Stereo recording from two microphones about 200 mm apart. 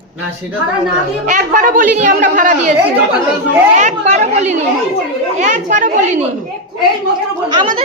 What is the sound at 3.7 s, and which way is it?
A woman's voice, 35° right (ahead or behind).